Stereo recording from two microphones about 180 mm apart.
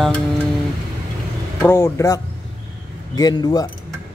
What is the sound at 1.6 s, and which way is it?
Speech, 15° left (ahead or behind).